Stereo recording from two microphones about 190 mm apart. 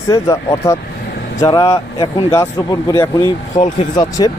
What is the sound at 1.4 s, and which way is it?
A man's voice, 15° left (ahead or behind).